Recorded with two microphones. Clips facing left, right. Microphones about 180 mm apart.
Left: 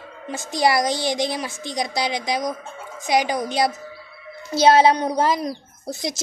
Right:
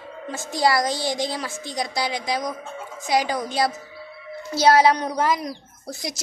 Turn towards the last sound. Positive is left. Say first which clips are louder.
# left 4 dB
turn(degrees=25)  # may be behind; listen again after turning